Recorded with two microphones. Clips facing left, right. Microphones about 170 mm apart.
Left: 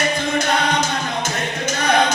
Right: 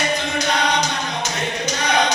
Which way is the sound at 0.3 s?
50° left (ahead or behind).